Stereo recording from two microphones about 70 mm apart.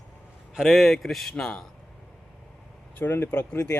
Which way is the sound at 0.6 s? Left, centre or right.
Centre.